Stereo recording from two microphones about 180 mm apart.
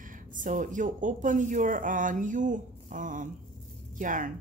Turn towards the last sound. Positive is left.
turn(degrees=-45)  # may be behind; listen again after turning